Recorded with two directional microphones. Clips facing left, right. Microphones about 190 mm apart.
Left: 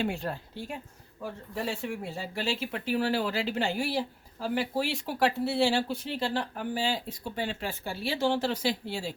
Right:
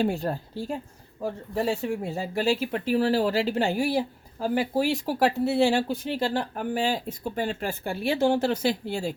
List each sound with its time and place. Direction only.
0.0 s a woman's voice: 40° right (ahead or behind)